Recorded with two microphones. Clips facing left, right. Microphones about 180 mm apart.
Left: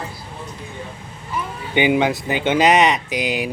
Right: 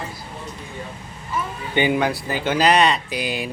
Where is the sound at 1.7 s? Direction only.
15° left (ahead or behind).